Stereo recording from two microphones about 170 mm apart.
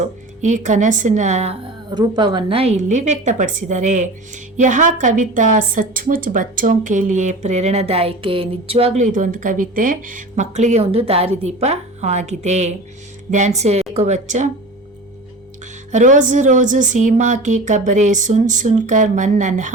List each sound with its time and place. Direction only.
0.0 s a woman's voice: 45° right (ahead or behind)
1.9 s a woman's voice: 25° right (ahead or behind); by 14.5 s 45° right (ahead or behind)
15.9 s a woman's voice: 45° right (ahead or behind)